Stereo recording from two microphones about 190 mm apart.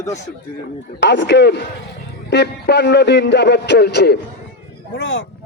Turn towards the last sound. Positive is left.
turn(degrees=75)  # may be behind; listen again after turning